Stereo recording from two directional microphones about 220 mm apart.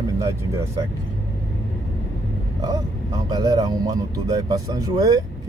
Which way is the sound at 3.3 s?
20° right (ahead or behind).